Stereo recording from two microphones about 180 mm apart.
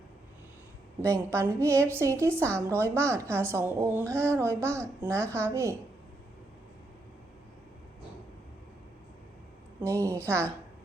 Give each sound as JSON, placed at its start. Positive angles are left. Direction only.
{"t": 1.0, "sound": "a woman's voice", "side_deg": -15}
{"t": 10.2, "sound": "a woman's voice", "side_deg": -15}